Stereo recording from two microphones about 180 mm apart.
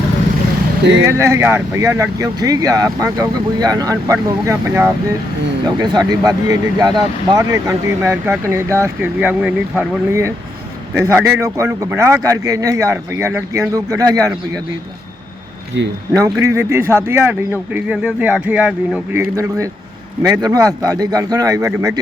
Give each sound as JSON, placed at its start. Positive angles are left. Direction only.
{"t": 1.0, "sound": "speech", "side_deg": -15}
{"t": 16.1, "sound": "speech", "side_deg": -15}